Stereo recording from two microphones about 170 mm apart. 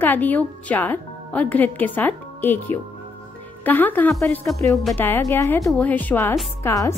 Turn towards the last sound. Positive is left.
turn(degrees=15)  # may be behind; listen again after turning